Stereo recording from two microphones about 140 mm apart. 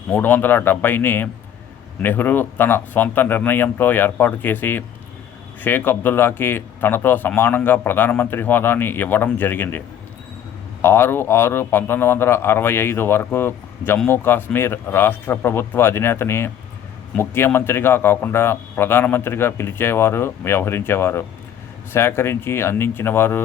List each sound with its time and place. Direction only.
0.1 s speech: 15° left (ahead or behind)
10.8 s speech: 15° left (ahead or behind)